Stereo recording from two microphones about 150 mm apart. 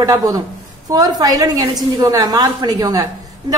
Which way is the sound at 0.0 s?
25° right (ahead or behind).